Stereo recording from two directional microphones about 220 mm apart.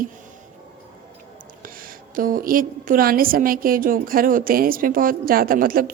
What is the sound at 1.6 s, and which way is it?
A woman's voice, 40° right (ahead or behind).